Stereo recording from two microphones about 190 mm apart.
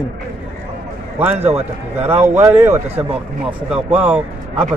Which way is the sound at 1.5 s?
30° right (ahead or behind).